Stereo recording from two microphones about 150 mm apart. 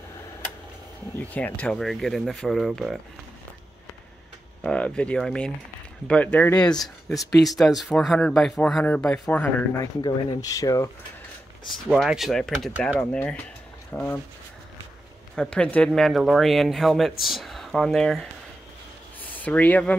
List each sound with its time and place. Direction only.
1.2 s speech: 10° left (ahead or behind)
4.6 s speech: 10° left (ahead or behind)
7.4 s speech: centre (ahead or behind)
10.0 s speech: 25° left (ahead or behind)
11.7 s speech: centre (ahead or behind)
15.3 s speech: 5° left (ahead or behind)